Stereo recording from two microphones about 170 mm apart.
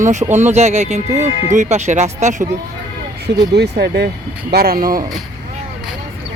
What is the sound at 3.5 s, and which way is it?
Speech, 80° right.